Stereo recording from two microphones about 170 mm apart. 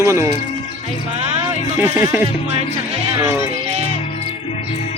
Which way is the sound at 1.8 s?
15° right (ahead or behind).